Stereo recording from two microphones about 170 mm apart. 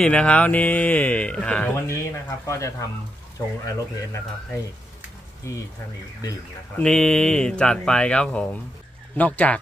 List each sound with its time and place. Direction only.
0.0 s speech: 5° left (ahead or behind)
2.4 s speech: 20° left (ahead or behind)
6.8 s speech: 5° left (ahead or behind)